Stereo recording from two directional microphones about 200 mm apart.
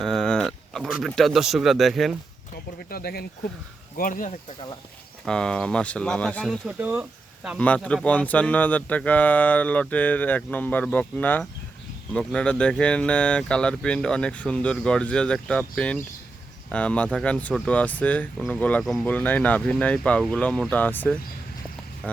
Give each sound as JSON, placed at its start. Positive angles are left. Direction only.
{"t": 0.0, "sound": "a sound", "side_deg": 0}
{"t": 2.7, "sound": "speech", "side_deg": 50}
{"t": 5.2, "sound": "speech", "side_deg": 5}
{"t": 7.6, "sound": "speech", "side_deg": 5}